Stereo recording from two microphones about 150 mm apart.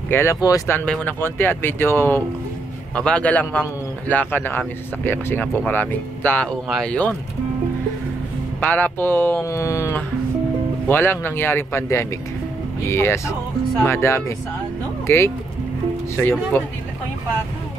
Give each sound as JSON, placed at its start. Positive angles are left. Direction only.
{"t": 0.1, "sound": "speech", "side_deg": 20}
{"t": 0.7, "sound": "speech", "side_deg": 10}
{"t": 8.5, "sound": "speech", "side_deg": 10}
{"t": 16.5, "sound": "speech", "side_deg": 15}